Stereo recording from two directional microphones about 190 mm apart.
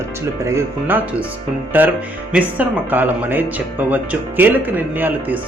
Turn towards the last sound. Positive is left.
turn(degrees=-10)  # may be behind; listen again after turning